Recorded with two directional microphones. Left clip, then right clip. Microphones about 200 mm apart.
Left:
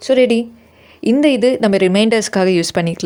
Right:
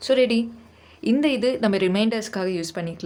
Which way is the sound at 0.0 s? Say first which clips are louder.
Left 7 dB; 30° left (ahead or behind).